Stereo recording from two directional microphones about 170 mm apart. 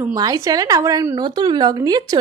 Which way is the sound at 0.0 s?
20° right (ahead or behind).